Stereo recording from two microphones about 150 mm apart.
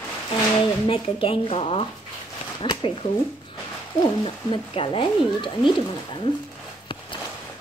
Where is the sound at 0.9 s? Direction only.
40° left (ahead or behind).